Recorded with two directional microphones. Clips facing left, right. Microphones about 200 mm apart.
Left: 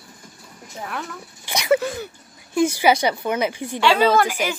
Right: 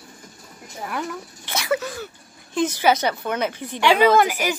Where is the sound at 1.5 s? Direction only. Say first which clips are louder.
Left 5 dB; 15° left (ahead or behind).